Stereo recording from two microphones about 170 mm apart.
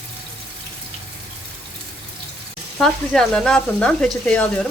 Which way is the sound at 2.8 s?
5° left (ahead or behind).